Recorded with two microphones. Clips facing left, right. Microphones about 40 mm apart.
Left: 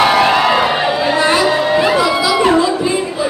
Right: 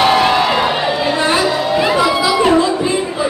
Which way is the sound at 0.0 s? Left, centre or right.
Centre.